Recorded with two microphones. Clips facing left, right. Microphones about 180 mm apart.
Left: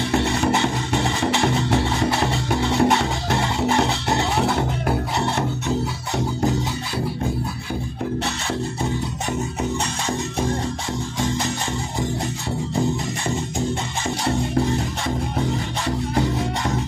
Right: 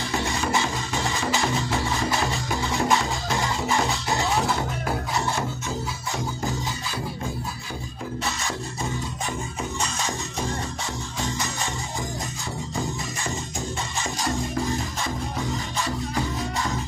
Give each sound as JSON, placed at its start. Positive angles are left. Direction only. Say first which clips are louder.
{"t": 0.1, "sound": "music", "louder": "left 5 dB", "side_deg": 65}
{"t": 14.2, "sound": "music", "louder": "left 5 dB", "side_deg": 60}
{"t": 16.2, "sound": "music", "louder": "left 6 dB", "side_deg": 65}